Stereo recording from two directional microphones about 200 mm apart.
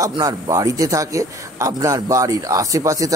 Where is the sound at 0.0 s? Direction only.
15° right (ahead or behind).